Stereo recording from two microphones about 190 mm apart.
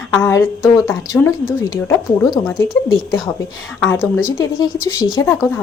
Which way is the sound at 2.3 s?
Centre (ahead or behind).